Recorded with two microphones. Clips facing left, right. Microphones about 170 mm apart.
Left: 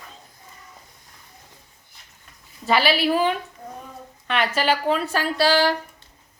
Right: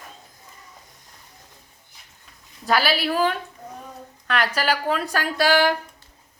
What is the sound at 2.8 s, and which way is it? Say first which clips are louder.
Speech: left 3 dB; centre (ahead or behind).